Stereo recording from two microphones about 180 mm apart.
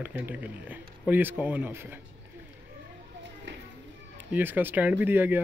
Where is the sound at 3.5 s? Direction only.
90° right.